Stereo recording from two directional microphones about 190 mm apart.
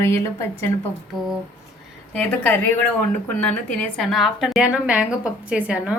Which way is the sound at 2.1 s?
10° left (ahead or behind).